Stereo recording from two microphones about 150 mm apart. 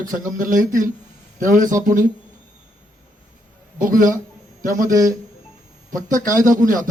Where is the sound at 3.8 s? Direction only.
65° right (ahead or behind).